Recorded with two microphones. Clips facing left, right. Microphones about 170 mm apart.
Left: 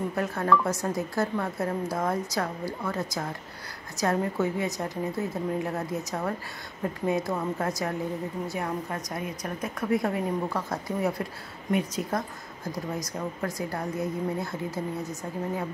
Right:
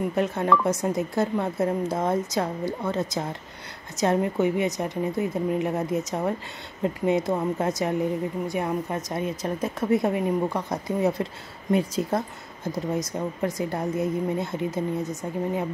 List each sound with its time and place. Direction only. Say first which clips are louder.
0.1 s a woman's voice: right 1 dB; 20° right (ahead or behind)